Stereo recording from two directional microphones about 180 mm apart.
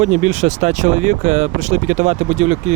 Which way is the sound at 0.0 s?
40° right (ahead or behind).